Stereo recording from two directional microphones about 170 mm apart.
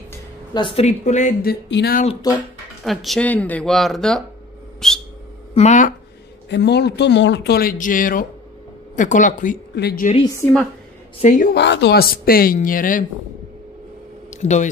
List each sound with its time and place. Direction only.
0.6 s speech: 35° left (ahead or behind)
1.4 s speech: 75° left (ahead or behind)
2.3 s speech: 20° left (ahead or behind)
2.8 s speech: centre (ahead or behind)
4.7 s whistling: 5° left (ahead or behind)
5.5 s speech: 45° left (ahead or behind)
6.5 s speech: 80° left; by 9.6 s 50° left (ahead or behind)
9.8 s speech: 70° left (ahead or behind)
11.1 s speech: 50° left (ahead or behind)
11.5 s speech: 90° left; by 13.0 s 55° left (ahead or behind)
14.3 s speech: 45° left (ahead or behind)